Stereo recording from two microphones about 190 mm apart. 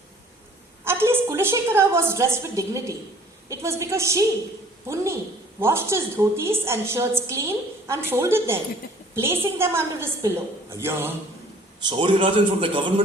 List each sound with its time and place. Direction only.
0.9 s a woman's voice: 10° right (ahead or behind)
5.5 s a woman's voice: 15° right (ahead or behind)
11.9 s a man's voice: 25° right (ahead or behind)